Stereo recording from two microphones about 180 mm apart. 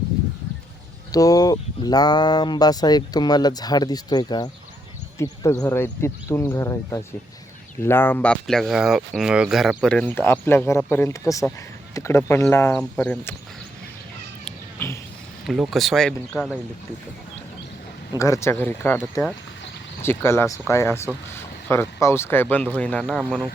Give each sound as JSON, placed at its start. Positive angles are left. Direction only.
{"t": 1.1, "sound": "speech", "side_deg": 20}
{"t": 14.4, "sound": "cat", "side_deg": 10}
{"t": 15.4, "sound": "speech", "side_deg": 0}
{"t": 18.2, "sound": "speech", "side_deg": 15}